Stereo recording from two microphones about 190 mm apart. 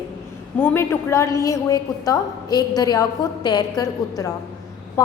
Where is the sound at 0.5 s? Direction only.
10° left (ahead or behind).